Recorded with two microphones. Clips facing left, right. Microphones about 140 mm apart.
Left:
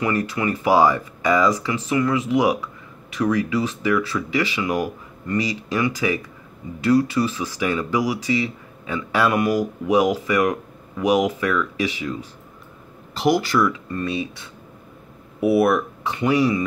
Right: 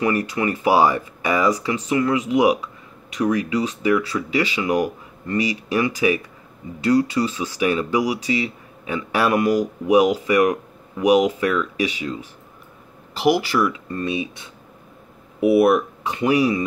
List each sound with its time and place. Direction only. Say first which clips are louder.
0.0 s speech: right 1 dB; 20° right (ahead or behind)